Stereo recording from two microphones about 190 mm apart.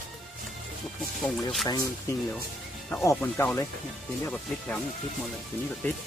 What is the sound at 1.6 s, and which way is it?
Speech, 15° left (ahead or behind).